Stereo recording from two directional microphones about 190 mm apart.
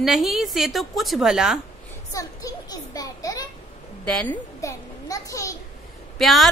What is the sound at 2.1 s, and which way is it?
A child's voice, 20° left (ahead or behind).